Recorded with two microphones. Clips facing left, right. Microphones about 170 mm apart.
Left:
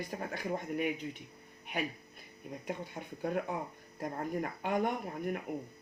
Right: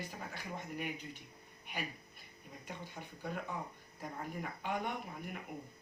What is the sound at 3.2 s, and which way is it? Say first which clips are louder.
Speech: left 7 dB; 55° left (ahead or behind).